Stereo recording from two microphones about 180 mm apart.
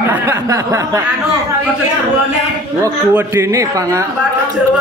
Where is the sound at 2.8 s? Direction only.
15° right (ahead or behind).